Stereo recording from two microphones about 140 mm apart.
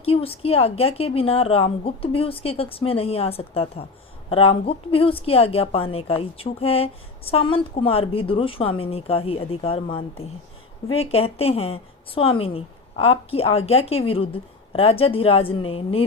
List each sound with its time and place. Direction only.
0.0 s a woman's voice: 45° left (ahead or behind)
11.0 s a woman's voice: 45° left (ahead or behind)